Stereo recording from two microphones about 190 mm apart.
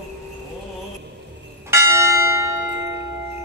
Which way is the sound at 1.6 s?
15° right (ahead or behind).